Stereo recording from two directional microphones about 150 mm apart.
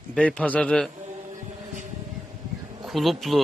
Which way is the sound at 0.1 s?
5° left (ahead or behind).